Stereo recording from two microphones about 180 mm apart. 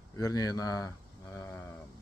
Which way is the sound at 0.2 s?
20° left (ahead or behind).